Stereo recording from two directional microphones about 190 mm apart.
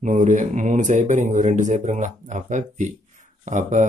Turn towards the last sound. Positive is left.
turn(degrees=-40)  # may be behind; listen again after turning